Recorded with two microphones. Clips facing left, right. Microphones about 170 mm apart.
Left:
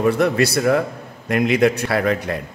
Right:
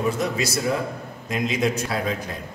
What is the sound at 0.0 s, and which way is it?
A man's voice, 65° left (ahead or behind).